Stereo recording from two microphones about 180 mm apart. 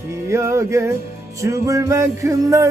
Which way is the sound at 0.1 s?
15° right (ahead or behind).